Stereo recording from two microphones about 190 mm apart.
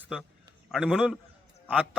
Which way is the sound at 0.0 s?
Centre (ahead or behind).